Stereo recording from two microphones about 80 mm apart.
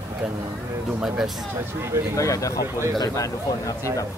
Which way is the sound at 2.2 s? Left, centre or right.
Left.